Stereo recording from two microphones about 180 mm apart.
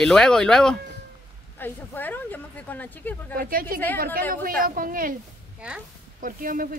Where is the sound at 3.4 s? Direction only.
55° right (ahead or behind).